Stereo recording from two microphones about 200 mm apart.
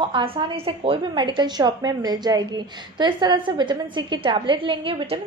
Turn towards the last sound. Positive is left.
turn(degrees=-25)  # may be behind; listen again after turning